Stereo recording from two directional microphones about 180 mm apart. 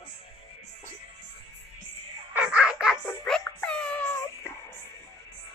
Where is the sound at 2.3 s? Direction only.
10° right (ahead or behind); by 4.5 s 10° left (ahead or behind).